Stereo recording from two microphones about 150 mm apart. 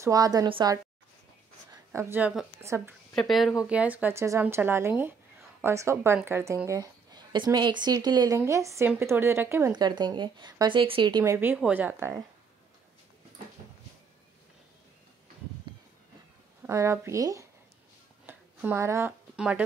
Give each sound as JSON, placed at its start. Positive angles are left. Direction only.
{"t": 0.0, "sound": "a woman's voice", "side_deg": -25}
{"t": 1.9, "sound": "a woman's voice", "side_deg": -15}
{"t": 3.2, "sound": "speech", "side_deg": 0}
{"t": 9.8, "sound": "speech", "side_deg": -30}
{"t": 11.5, "sound": "speech", "side_deg": -10}
{"t": 16.6, "sound": "speech", "side_deg": -20}
{"t": 18.2, "sound": "a sound", "side_deg": -15}
{"t": 19.3, "sound": "speech", "side_deg": -5}